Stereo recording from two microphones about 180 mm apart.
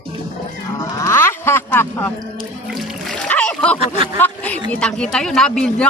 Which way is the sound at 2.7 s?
5° left (ahead or behind).